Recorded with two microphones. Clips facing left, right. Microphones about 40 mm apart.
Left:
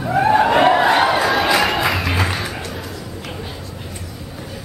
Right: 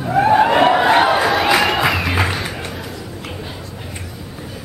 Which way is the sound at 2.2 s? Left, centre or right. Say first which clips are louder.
Right 1 dB; centre.